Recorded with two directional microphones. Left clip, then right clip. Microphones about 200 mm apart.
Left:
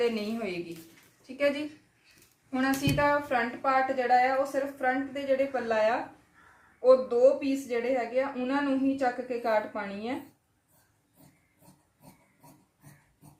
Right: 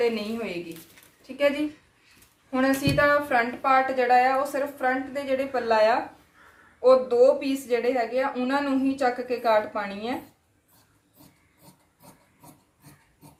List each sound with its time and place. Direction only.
0.0 s a woman's voice: centre (ahead or behind); by 10.1 s 15° right (ahead or behind)